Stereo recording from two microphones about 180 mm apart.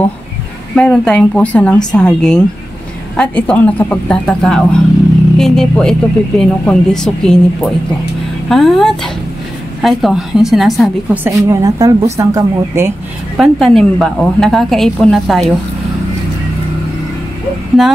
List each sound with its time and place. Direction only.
0.7 s speech: 5° left (ahead or behind)
11.2 s speech: 15° right (ahead or behind)
13.4 s speech: centre (ahead or behind)
17.8 s speech: centre (ahead or behind)